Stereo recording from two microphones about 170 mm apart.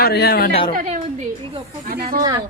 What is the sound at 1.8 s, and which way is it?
Speech, 65° right (ahead or behind).